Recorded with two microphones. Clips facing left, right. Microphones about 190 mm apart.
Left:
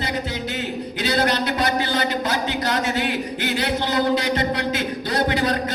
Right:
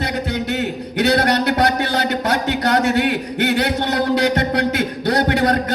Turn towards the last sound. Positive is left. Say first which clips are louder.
# right 4 dB
turn(degrees=-60)  # may be behind; listen again after turning